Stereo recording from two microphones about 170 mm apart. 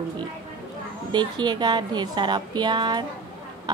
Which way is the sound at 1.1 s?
25° right (ahead or behind).